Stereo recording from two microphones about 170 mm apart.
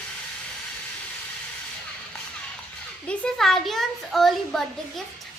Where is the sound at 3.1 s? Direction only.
5° left (ahead or behind).